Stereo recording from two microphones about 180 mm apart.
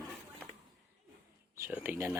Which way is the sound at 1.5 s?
10° right (ahead or behind).